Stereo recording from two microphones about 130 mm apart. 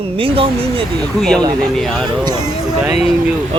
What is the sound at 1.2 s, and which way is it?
Speech, 5° left (ahead or behind).